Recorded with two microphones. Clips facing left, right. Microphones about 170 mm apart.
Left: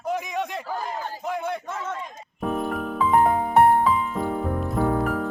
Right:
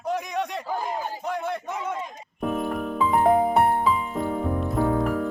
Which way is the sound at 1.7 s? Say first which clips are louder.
Right 1 dB; 15° right (ahead or behind).